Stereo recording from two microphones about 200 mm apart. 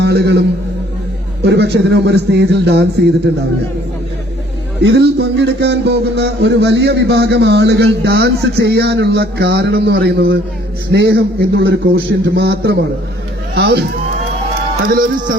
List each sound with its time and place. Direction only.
0.0 s a man's voice: 55° right (ahead or behind)
1.5 s a man's voice: 60° right (ahead or behind)
4.8 s a man's voice: 60° right (ahead or behind)
14.8 s speech: 45° right (ahead or behind)